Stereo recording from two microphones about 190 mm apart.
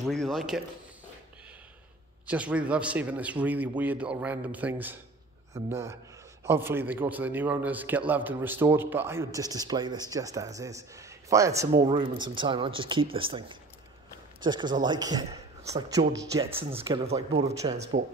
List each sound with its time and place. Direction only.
0.1 s a man's voice: centre (ahead or behind)
2.2 s a man's voice: 5° right (ahead or behind); by 17.8 s 25° right (ahead or behind)